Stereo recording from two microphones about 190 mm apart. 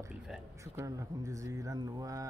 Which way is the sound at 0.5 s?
15° right (ahead or behind).